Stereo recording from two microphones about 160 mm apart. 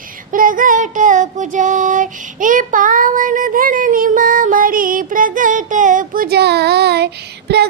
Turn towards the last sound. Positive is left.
turn(degrees=-90)